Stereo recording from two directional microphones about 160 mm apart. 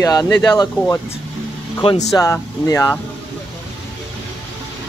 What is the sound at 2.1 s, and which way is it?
Speech, 20° left (ahead or behind).